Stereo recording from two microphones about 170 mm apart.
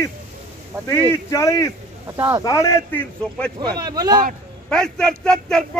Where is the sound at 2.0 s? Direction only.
15° right (ahead or behind).